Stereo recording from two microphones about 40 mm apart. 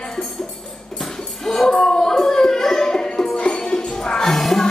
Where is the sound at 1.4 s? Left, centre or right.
Centre.